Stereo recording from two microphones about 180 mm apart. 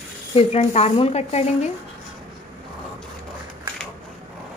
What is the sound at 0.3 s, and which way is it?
Speech, 35° left (ahead or behind).